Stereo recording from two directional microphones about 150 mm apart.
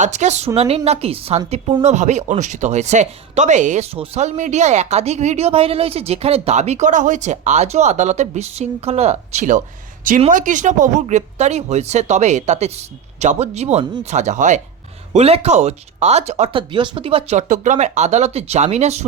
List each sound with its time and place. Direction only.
0.0 s speech: 50° right (ahead or behind)
3.9 s speech: 40° right (ahead or behind)
15.1 s speech: 40° right (ahead or behind)
16.6 s speech: 35° right (ahead or behind)
17.3 s speech: 55° right (ahead or behind)